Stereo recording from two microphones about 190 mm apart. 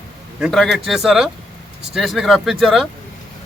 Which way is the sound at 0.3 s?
Centre (ahead or behind).